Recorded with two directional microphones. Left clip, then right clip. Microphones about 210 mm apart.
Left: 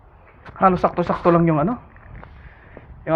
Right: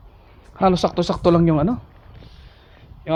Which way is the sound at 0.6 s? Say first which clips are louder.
Left 1 dB; 60° right (ahead or behind).